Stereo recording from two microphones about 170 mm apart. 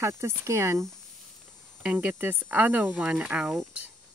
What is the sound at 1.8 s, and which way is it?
Speech, 10° right (ahead or behind).